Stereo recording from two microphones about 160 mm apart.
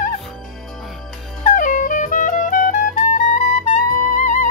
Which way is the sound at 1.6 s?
55° left (ahead or behind).